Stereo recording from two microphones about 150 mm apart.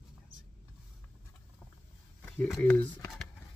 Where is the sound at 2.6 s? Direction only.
10° left (ahead or behind).